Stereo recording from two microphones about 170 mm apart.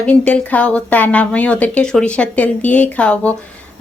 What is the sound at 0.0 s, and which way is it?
Speech, 5° left (ahead or behind).